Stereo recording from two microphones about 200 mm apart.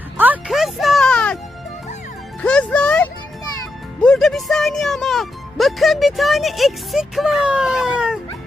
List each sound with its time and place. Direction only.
0.2 s music: 5° right (ahead or behind)
2.4 s music: 5° left (ahead or behind)